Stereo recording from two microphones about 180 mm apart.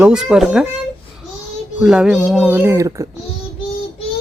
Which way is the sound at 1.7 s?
5° right (ahead or behind).